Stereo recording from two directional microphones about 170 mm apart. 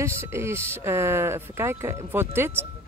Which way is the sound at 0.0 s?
15° right (ahead or behind).